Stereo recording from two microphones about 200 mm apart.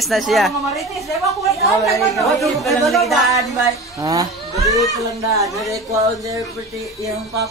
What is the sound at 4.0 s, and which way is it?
Speech, 15° right (ahead or behind).